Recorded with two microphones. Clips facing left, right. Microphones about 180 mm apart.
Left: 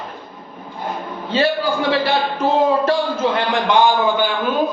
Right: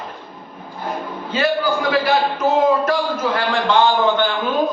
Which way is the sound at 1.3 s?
30° left (ahead or behind).